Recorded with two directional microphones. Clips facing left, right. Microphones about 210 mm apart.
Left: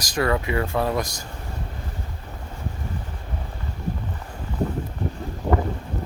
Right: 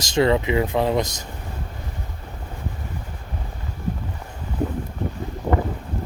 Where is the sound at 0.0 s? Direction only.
25° right (ahead or behind).